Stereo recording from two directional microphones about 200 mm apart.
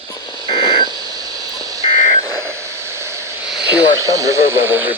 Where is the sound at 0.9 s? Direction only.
20° right (ahead or behind).